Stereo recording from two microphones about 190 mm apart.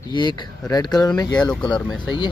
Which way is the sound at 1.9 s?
25° left (ahead or behind).